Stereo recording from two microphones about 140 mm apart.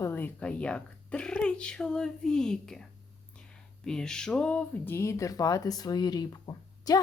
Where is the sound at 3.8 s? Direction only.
5° left (ahead or behind).